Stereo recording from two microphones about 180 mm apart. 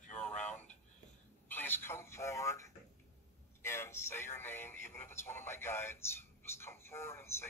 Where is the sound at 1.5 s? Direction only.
10° left (ahead or behind).